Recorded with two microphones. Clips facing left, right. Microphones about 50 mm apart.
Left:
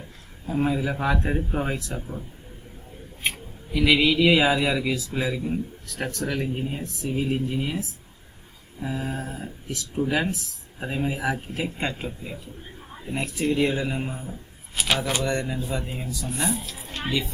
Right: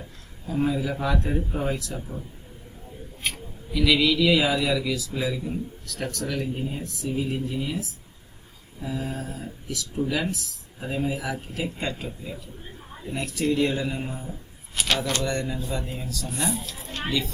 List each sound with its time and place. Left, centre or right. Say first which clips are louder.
0.4 s speech: left 1 dB; left
2.0 s speech: left 1 dB; centre
3.2 s a sound: left 2 dB; left
3.7 s speech: left 1 dB; left
16.3 s speech: left 1 dB; centre